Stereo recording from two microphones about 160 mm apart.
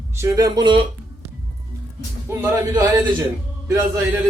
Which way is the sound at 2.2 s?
15° right (ahead or behind).